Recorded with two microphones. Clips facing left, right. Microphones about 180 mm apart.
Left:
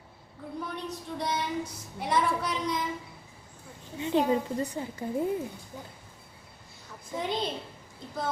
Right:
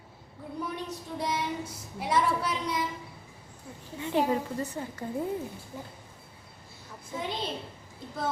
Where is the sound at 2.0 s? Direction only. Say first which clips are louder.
Even; 5° right (ahead or behind).